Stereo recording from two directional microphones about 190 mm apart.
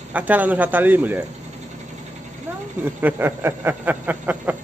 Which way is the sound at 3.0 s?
10° right (ahead or behind).